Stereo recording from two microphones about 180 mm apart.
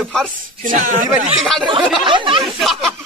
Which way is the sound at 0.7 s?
45° right (ahead or behind).